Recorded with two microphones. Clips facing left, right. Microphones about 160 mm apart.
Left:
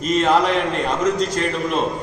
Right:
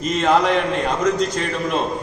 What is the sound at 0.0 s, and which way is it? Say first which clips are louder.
Speech: even; centre (ahead or behind).